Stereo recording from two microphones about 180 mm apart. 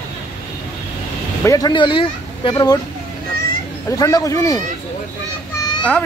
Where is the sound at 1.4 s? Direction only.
20° left (ahead or behind).